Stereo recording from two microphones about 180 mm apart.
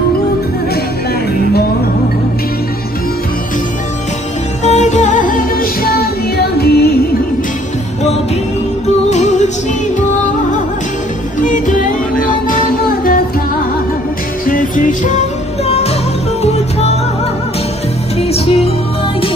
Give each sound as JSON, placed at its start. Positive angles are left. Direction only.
{"t": 4.6, "sound": "music", "side_deg": 40}
{"t": 9.1, "sound": "music", "side_deg": 40}
{"t": 11.3, "sound": "music", "side_deg": 45}
{"t": 14.4, "sound": "music", "side_deg": 50}
{"t": 18.3, "sound": "music", "side_deg": 35}